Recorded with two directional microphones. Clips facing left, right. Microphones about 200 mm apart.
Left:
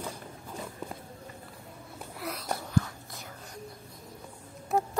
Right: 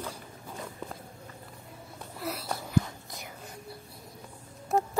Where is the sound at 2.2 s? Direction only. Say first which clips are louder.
Right 2 dB; 5° right (ahead or behind).